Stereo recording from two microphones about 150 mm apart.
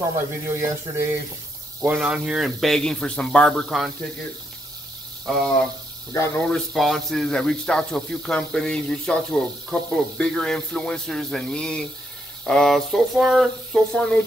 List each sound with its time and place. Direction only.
0.0 s speech: 20° right (ahead or behind)
1.8 s speech: 10° right (ahead or behind)
5.2 s speech: 5° left (ahead or behind)
6.1 s speech: 15° left (ahead or behind)